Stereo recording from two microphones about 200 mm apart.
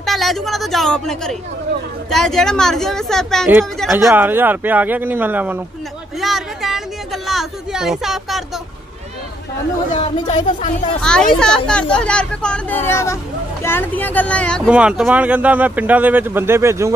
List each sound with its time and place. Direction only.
0.0 s speech: centre (ahead or behind)
3.9 s speech: 10° right (ahead or behind)
9.9 s speech: 30° left (ahead or behind)
11.0 s speech: 5° left (ahead or behind); by 16.9 s 15° right (ahead or behind)